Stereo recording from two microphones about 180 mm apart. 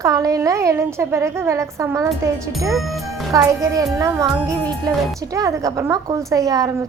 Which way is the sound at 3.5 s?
20° right (ahead or behind).